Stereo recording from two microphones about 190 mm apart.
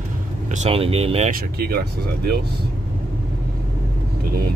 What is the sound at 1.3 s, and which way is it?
Speech, 50° right (ahead or behind).